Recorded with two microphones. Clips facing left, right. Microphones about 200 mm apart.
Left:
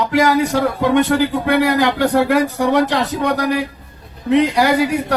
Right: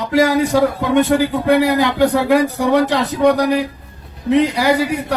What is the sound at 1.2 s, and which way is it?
A man's voice, 60° left (ahead or behind).